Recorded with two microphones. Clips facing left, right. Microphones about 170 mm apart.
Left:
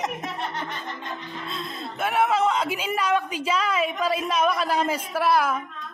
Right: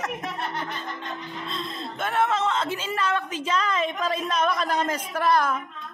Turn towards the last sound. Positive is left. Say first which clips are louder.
# left 1 dB
turn(degrees=5)  # may be behind; listen again after turning